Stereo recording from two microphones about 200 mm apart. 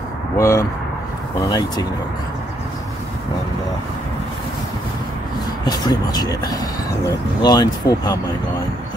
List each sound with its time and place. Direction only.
0.4 s speech: 15° left (ahead or behind)
5.7 s speech: 20° left (ahead or behind)